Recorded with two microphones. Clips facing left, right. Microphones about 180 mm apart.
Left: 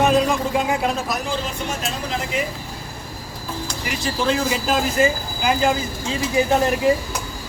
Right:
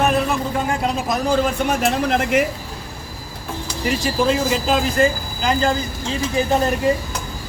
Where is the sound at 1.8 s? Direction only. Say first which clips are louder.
Right 8 dB; 65° right (ahead or behind).